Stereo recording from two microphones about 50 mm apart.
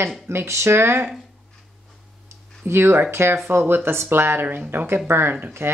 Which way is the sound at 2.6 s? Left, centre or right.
Right.